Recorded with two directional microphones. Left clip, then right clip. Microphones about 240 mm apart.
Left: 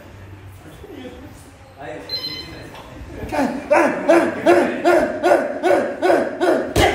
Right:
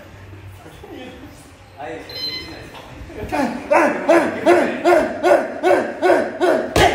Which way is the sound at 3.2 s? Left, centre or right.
Centre.